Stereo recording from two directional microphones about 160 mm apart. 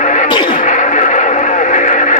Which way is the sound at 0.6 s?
50° left (ahead or behind).